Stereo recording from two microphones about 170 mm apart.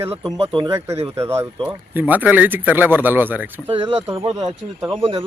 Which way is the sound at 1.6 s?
10° right (ahead or behind).